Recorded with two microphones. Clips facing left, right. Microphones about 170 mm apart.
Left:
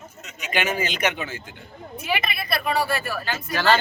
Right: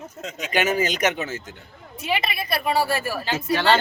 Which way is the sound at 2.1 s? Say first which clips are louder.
Right 1 dB; 25° right (ahead or behind).